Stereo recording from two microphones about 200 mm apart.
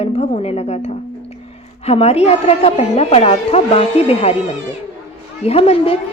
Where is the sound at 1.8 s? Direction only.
30° left (ahead or behind).